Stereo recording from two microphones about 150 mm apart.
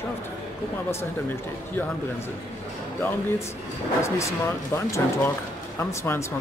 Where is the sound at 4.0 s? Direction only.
20° left (ahead or behind).